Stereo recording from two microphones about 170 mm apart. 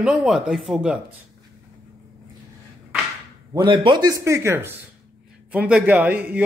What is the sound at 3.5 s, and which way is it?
A man's voice, 30° right (ahead or behind).